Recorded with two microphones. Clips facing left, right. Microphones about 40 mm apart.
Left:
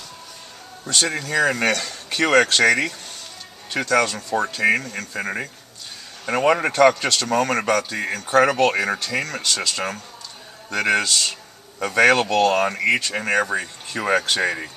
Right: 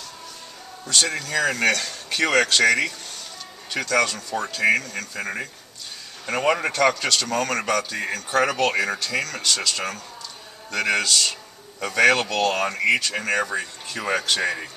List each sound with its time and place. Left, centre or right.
0.9 s speech: centre
2.1 s speech: centre; by 7.6 s left
7.6 s speech: centre
9.2 s speech: left